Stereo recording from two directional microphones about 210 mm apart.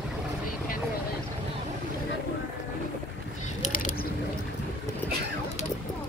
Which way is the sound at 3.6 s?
40° left (ahead or behind).